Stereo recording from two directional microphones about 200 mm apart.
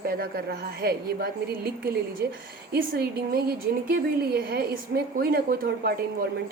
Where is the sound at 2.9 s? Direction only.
50° right (ahead or behind).